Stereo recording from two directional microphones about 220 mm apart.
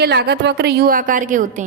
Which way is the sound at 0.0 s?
45° right (ahead or behind).